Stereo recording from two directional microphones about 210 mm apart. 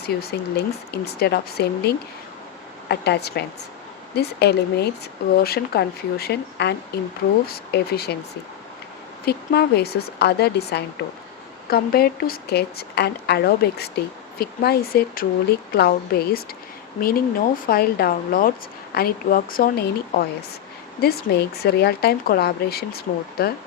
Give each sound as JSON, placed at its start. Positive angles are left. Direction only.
{"t": 0.0, "sound": "a woman's voice", "side_deg": 50}
{"t": 9.2, "sound": "a woman's voice", "side_deg": 50}